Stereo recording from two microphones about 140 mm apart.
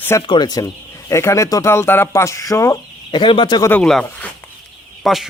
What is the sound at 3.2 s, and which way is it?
Speech, 35° left (ahead or behind).